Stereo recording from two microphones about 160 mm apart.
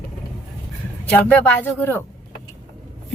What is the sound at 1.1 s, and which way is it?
Speech, 10° left (ahead or behind).